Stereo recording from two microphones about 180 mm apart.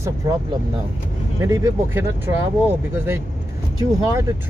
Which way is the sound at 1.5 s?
15° right (ahead or behind).